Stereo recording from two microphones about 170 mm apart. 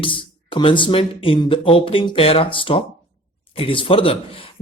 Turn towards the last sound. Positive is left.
turn(degrees=30)  # may be behind; listen again after turning